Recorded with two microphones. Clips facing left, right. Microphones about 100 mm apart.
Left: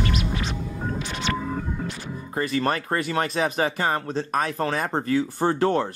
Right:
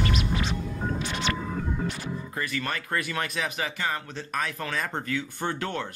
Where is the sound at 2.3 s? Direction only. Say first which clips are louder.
Left 9 dB; 30° left (ahead or behind).